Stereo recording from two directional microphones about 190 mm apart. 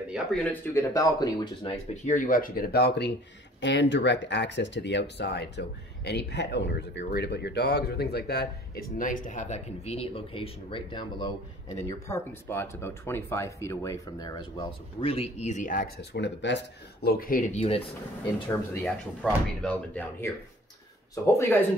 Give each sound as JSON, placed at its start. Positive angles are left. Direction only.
{"t": 0.1, "sound": "speech", "side_deg": 0}
{"t": 0.7, "sound": "speech", "side_deg": 15}
{"t": 2.0, "sound": "speech", "side_deg": 45}
{"t": 11.9, "sound": "speech", "side_deg": 15}
{"t": 17.0, "sound": "speech", "side_deg": 50}
{"t": 17.6, "sound": "speech", "side_deg": 30}
{"t": 18.9, "sound": "speech", "side_deg": 5}